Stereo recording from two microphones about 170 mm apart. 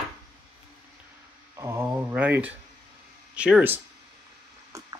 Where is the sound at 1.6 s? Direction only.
15° right (ahead or behind).